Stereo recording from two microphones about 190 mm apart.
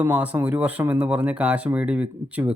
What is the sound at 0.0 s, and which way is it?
Speech, 10° right (ahead or behind).